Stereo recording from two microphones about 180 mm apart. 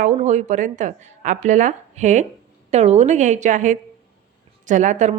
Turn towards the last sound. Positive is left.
turn(degrees=-40)  # may be behind; listen again after turning